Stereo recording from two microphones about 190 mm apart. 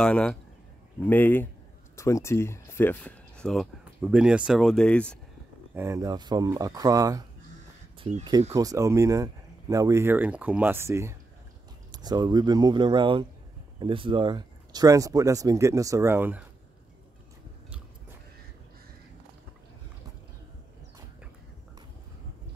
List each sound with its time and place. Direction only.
0.0 s speech: 5° left (ahead or behind)
5.8 s speech: 15° right (ahead or behind)